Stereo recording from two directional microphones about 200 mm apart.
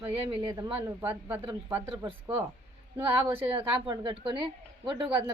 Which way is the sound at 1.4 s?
20° right (ahead or behind).